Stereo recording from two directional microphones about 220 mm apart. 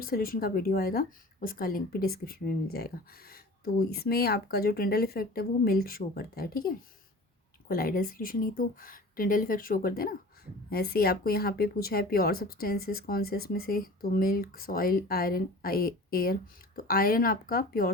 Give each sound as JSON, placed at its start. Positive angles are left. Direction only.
{"t": 0.0, "sound": "a woman's voice", "side_deg": 40}